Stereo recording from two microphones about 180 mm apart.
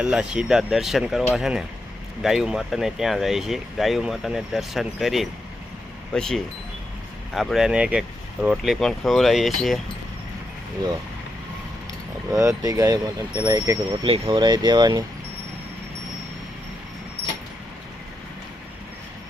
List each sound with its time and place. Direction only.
0.0 s speech: 5° right (ahead or behind)
12.3 s speech: 20° right (ahead or behind)